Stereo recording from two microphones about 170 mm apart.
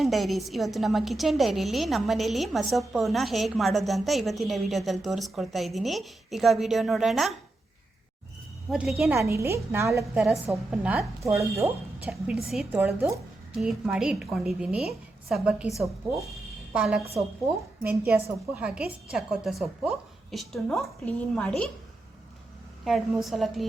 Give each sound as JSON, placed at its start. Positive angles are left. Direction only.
{"t": 0.0, "sound": "a woman's voice", "side_deg": 0}
{"t": 8.7, "sound": "a woman's voice", "side_deg": 0}
{"t": 9.1, "sound": "a woman's voice", "side_deg": -15}
{"t": 10.2, "sound": "a woman's voice", "side_deg": 0}
{"t": 12.0, "sound": "a woman's voice", "side_deg": -5}
{"t": 16.7, "sound": "a woman's voice", "side_deg": -5}
{"t": 22.8, "sound": "a woman's voice", "side_deg": 0}